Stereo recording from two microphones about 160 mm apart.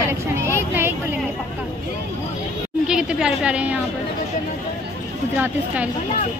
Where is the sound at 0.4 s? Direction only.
15° right (ahead or behind).